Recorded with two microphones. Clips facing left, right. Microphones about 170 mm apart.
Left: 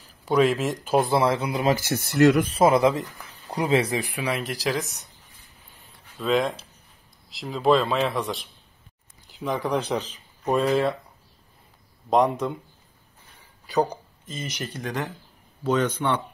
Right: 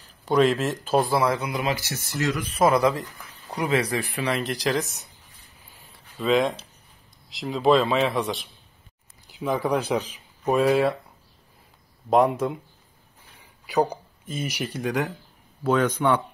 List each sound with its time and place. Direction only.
0.2 s speech: 10° left (ahead or behind)
1.0 s speech: 25° left (ahead or behind)
1.8 s speech: 55° left (ahead or behind)
2.5 s speech: 25° left (ahead or behind); by 5.0 s centre (ahead or behind)
5.8 s a sound: centre (ahead or behind)
7.2 s a man's voice: centre (ahead or behind)
12.1 s a man's voice: 5° right (ahead or behind)
13.7 s speech: 10° right (ahead or behind)